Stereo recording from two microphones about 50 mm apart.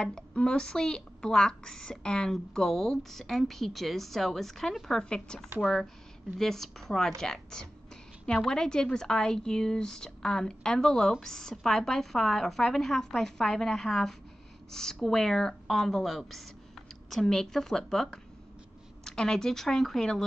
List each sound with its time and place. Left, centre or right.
0.0 s a woman's voice: centre
5.1 s a woman's voice: centre